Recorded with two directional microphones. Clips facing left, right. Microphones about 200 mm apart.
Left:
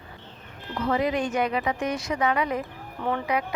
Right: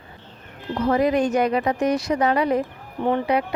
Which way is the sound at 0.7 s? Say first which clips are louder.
Right 5 dB; 40° right (ahead or behind).